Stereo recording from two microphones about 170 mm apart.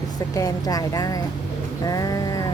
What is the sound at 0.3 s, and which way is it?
A woman's voice, 20° left (ahead or behind).